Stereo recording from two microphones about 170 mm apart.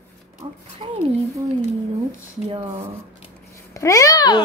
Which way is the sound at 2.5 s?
30° right (ahead or behind).